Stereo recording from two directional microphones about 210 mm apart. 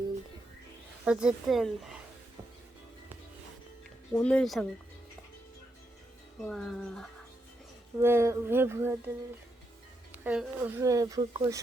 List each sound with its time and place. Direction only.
1.0 s speech: 5° right (ahead or behind)
4.1 s speech: 5° left (ahead or behind)
6.4 s speech: centre (ahead or behind)
8.0 s speech: 10° right (ahead or behind)
10.1 s speech: 5° right (ahead or behind)